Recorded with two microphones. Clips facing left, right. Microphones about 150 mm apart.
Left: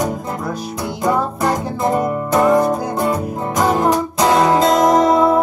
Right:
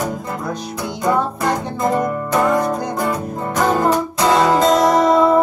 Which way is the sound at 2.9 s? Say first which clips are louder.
Left 2 dB; 25° left (ahead or behind).